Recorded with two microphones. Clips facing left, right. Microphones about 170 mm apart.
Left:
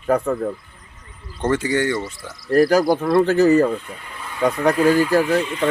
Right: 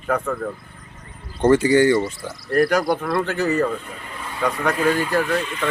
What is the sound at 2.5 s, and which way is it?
Speech, 30° left (ahead or behind).